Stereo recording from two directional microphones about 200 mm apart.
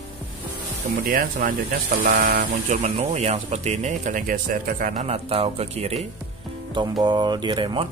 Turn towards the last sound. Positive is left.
turn(degrees=-25)  # may be behind; listen again after turning